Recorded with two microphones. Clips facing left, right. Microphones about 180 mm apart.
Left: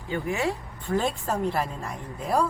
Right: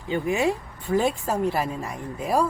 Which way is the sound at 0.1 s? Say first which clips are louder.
Right 4 dB; 15° right (ahead or behind).